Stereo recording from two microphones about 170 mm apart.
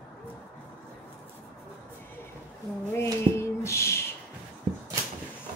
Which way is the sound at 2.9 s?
15° left (ahead or behind).